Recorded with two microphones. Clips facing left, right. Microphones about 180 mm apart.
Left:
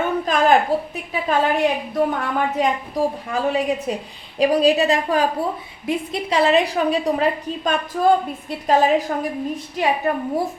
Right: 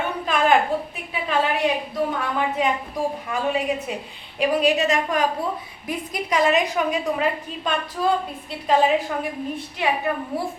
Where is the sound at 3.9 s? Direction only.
40° left (ahead or behind).